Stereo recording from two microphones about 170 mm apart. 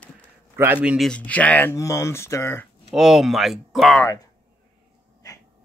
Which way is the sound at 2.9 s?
Centre (ahead or behind).